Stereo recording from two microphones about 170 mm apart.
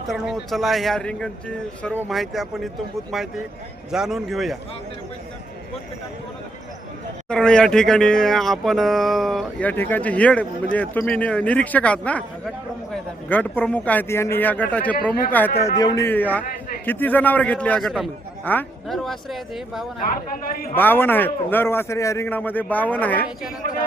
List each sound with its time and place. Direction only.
0.1 s speech: centre (ahead or behind)
7.3 s speech: 5° left (ahead or behind)
15.6 s speech: 25° left (ahead or behind)
18.9 s speech: centre (ahead or behind)
20.3 s a man's voice: 60° left (ahead or behind)
20.7 s speech: 10° left (ahead or behind)